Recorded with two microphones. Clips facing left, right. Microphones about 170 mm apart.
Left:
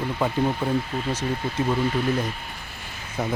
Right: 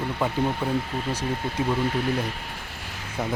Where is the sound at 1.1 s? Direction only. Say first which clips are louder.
Left 1 dB; 10° right (ahead or behind).